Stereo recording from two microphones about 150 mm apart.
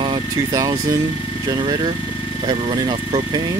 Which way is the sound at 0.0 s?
25° right (ahead or behind).